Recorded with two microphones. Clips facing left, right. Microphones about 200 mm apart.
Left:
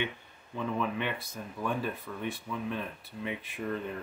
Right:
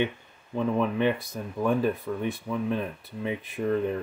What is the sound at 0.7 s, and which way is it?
Speech, 40° right (ahead or behind).